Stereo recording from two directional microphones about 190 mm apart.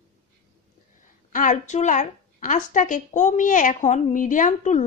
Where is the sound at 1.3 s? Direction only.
40° left (ahead or behind).